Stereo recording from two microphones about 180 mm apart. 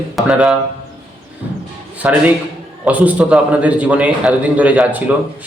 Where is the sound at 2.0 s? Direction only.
10° right (ahead or behind).